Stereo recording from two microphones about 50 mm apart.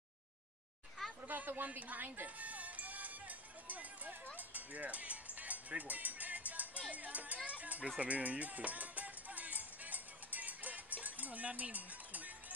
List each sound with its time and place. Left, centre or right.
1.2 s music: right
6.9 s speech: right
7.4 s a sound: right
8.0 s music: right